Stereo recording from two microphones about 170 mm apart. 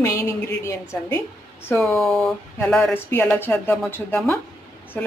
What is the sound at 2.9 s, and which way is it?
A woman's voice, 10° left (ahead or behind).